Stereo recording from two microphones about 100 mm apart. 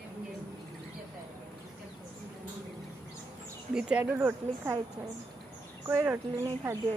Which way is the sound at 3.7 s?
10° right (ahead or behind).